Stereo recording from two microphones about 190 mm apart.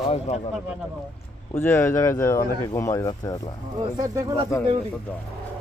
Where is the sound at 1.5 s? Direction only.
10° left (ahead or behind).